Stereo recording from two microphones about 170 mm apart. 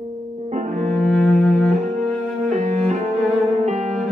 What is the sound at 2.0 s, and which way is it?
Cello, 40° right (ahead or behind).